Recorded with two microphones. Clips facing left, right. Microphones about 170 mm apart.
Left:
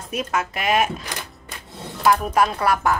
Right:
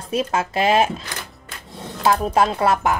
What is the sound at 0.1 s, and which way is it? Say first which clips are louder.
Speech: right 4 dB; 30° right (ahead or behind).